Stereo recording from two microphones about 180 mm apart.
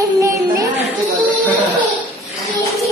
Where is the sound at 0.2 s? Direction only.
15° right (ahead or behind).